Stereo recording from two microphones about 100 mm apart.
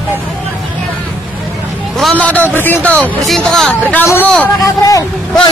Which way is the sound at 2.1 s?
15° left (ahead or behind).